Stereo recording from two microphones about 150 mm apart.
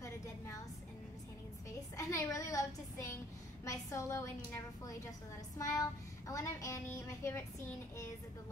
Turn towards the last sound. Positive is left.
turn(degrees=15)  # may be behind; listen again after turning